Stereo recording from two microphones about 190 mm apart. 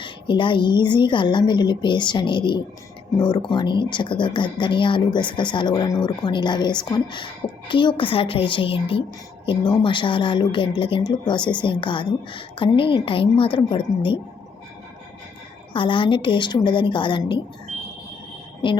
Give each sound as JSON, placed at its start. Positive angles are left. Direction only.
{"t": 0.0, "sound": "a woman's voice", "side_deg": 25}
{"t": 15.7, "sound": "a woman's voice", "side_deg": 25}